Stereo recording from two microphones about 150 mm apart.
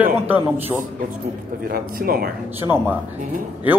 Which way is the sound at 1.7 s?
80° right.